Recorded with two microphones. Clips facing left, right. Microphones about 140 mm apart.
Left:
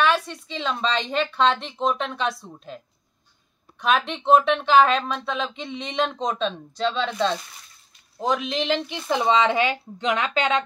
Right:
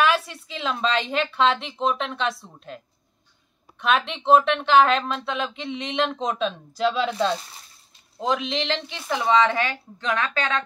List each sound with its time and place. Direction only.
0.0 s speech: 5° right (ahead or behind)
3.8 s speech: centre (ahead or behind); by 10.6 s 20° left (ahead or behind)